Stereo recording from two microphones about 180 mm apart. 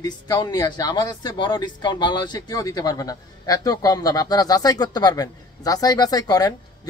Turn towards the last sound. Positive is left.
turn(degrees=20)  # may be behind; listen again after turning